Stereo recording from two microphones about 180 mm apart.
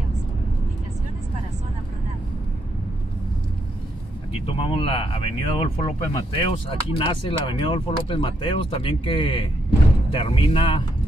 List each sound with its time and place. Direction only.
4.3 s speech: 30° left (ahead or behind)